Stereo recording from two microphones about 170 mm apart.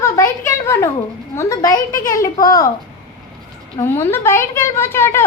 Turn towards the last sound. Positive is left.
turn(degrees=15)  # may be behind; listen again after turning